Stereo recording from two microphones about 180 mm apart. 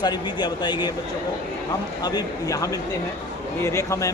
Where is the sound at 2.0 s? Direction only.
20° left (ahead or behind).